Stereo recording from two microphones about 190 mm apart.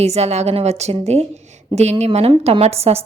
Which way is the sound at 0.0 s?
35° right (ahead or behind).